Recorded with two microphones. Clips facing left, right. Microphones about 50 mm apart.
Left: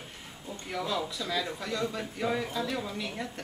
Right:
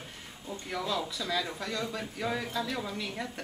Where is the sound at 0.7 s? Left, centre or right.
Centre.